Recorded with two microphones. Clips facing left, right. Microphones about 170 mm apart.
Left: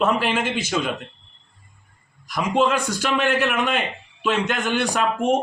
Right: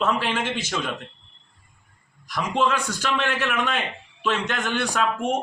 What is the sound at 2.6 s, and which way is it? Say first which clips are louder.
A man's voice: left 3 dB; 15° left (ahead or behind).